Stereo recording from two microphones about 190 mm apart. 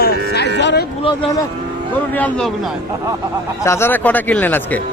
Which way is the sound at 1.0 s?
20° left (ahead or behind).